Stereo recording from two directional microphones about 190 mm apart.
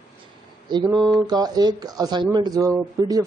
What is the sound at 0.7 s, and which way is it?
A man's voice, 25° right (ahead or behind).